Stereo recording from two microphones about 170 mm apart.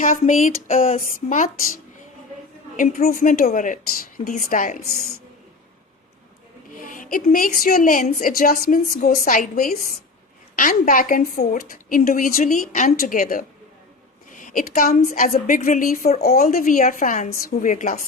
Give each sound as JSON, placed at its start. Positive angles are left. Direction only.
{"t": 0.0, "sound": "a woman's voice", "side_deg": 50}
{"t": 2.7, "sound": "a woman's voice", "side_deg": 50}
{"t": 6.8, "sound": "a woman's voice", "side_deg": 55}
{"t": 14.4, "sound": "a woman's voice", "side_deg": 50}